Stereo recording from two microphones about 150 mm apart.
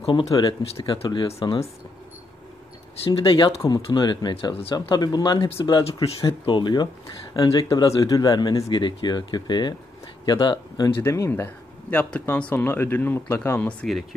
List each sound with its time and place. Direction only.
0.0 s speech: 40° left (ahead or behind)
0.3 s speech: 30° left (ahead or behind)
3.0 s speech: 35° left (ahead or behind)
11.0 s speech: 20° left (ahead or behind)